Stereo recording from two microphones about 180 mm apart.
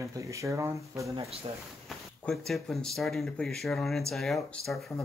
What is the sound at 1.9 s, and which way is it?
Speech, centre (ahead or behind).